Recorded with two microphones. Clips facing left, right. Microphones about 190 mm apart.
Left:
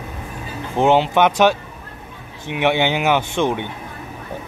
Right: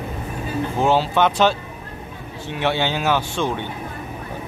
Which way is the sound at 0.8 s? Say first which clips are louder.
Left 4 dB; 20° left (ahead or behind).